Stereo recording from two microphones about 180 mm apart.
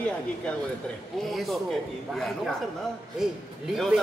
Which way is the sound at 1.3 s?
Centre (ahead or behind).